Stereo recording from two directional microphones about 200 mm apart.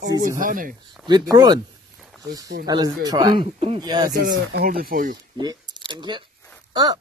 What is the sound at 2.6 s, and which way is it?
Speech, 20° right (ahead or behind).